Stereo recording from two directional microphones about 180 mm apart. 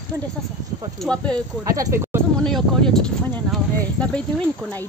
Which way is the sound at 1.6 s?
20° right (ahead or behind).